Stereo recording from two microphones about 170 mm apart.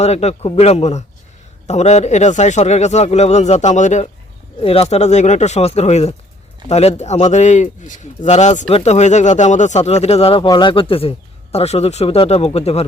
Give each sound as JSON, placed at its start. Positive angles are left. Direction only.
{"t": 0.0, "sound": "speech", "side_deg": 40}
{"t": 4.6, "sound": "speech", "side_deg": 35}